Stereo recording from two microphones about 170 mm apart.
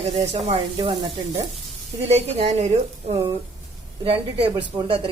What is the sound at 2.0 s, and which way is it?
A woman's voice, 40° right (ahead or behind).